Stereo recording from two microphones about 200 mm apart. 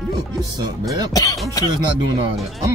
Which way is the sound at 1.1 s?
15° left (ahead or behind).